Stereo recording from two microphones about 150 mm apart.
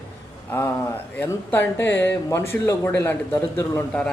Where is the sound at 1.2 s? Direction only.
15° left (ahead or behind).